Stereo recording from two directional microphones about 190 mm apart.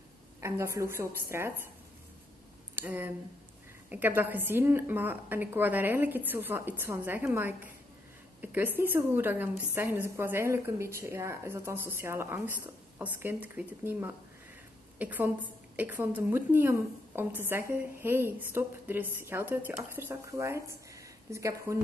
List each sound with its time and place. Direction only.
0.4 s a woman's voice: 15° right (ahead or behind)
2.7 s a woman's voice: 10° right (ahead or behind)
20.9 s a sound: 15° right (ahead or behind)